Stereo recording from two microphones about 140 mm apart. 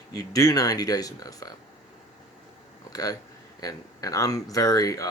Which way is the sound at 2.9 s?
25° left (ahead or behind).